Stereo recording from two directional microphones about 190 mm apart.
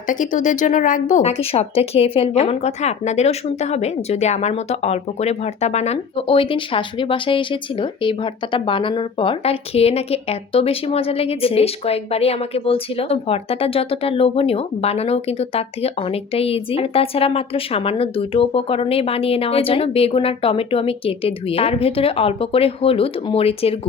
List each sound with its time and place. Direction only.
0.1 s speech: 45° left (ahead or behind)